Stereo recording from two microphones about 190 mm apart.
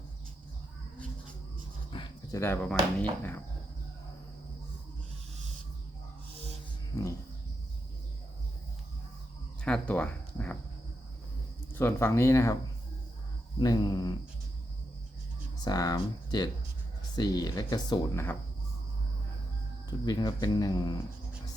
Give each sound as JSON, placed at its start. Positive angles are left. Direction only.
{"t": 1.9, "sound": "a sound", "side_deg": 25}
{"t": 2.4, "sound": "speech", "side_deg": 10}
{"t": 6.9, "sound": "speech", "side_deg": 20}
{"t": 9.6, "sound": "speech", "side_deg": 5}
{"t": 11.7, "sound": "speech", "side_deg": 10}
{"t": 13.6, "sound": "speech", "side_deg": 20}
{"t": 15.6, "sound": "speech", "side_deg": 20}
{"t": 20.1, "sound": "speech", "side_deg": 20}